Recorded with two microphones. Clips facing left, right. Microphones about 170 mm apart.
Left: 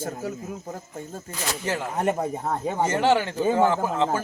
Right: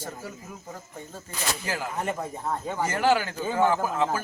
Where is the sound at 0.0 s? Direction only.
45° left (ahead or behind).